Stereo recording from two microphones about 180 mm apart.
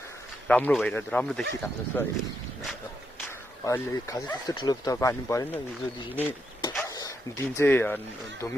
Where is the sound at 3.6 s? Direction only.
15° left (ahead or behind).